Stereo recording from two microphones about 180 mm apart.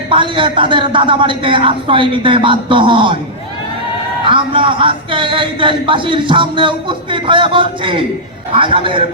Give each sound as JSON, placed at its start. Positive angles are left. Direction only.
{"t": 0.1, "sound": "a man's voice", "side_deg": -30}
{"t": 4.3, "sound": "a man's voice", "side_deg": -30}